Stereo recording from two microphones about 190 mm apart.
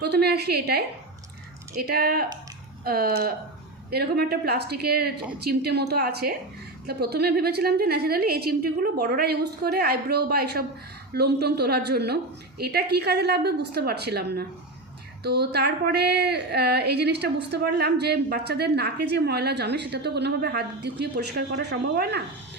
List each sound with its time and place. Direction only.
0.0 s a woman's voice: 60° right (ahead or behind)